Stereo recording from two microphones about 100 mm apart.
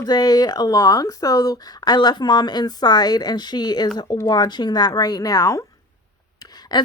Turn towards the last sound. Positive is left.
turn(degrees=45)  # may be behind; listen again after turning